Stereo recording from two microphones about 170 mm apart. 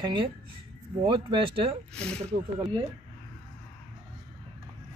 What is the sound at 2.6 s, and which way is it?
Speech, 30° right (ahead or behind).